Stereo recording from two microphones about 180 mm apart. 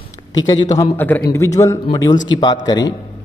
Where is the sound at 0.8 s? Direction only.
10° left (ahead or behind).